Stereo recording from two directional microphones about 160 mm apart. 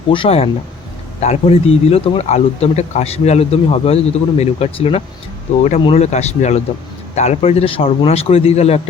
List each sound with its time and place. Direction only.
0.1 s speech: 35° left (ahead or behind)